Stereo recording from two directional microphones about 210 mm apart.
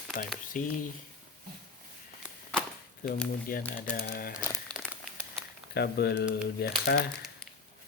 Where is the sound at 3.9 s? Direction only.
45° left (ahead or behind).